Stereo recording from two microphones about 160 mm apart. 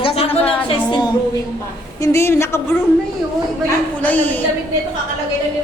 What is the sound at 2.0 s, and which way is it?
Speech, 15° left (ahead or behind).